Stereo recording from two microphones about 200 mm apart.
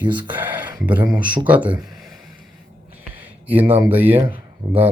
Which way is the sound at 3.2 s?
10° right (ahead or behind).